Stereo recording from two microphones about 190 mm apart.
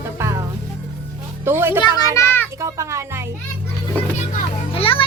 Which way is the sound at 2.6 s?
15° right (ahead or behind).